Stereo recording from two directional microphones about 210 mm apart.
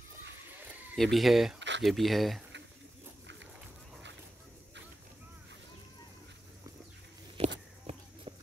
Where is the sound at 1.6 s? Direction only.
60° right (ahead or behind).